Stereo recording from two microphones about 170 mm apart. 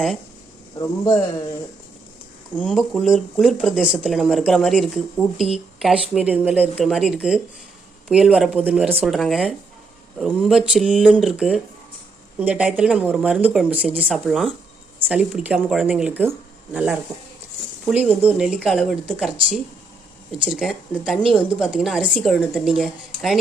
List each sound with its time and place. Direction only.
0.8 s speech: 20° left (ahead or behind)
2.6 s speech: centre (ahead or behind)